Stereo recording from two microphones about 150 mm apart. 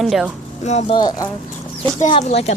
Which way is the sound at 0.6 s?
50° left (ahead or behind).